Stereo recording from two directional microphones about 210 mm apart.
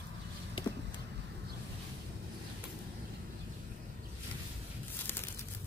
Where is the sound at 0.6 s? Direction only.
20° left (ahead or behind).